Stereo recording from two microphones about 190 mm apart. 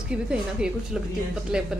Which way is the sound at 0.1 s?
5° right (ahead or behind).